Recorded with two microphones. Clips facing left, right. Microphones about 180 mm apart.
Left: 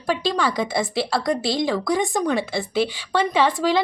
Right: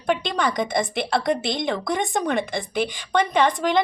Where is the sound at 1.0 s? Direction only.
20° right (ahead or behind).